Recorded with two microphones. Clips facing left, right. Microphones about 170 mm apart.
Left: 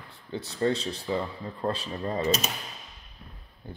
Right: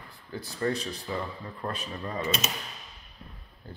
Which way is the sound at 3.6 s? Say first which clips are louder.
Left 3 dB; 20° left (ahead or behind).